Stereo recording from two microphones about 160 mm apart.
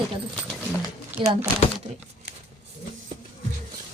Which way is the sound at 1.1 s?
40° right (ahead or behind).